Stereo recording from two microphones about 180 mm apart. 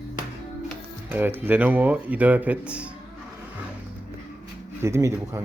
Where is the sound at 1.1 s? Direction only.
10° right (ahead or behind).